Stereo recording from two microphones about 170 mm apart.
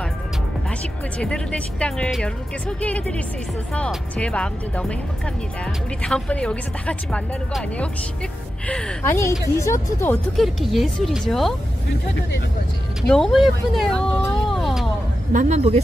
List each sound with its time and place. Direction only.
1.2 s speech: 5° left (ahead or behind)
6.0 s speech: 5° left (ahead or behind)
9.0 s speech: 15° left (ahead or behind)
10.3 s speech: centre (ahead or behind)
13.0 s speech: 5° left (ahead or behind)
15.3 s speech: 45° right (ahead or behind)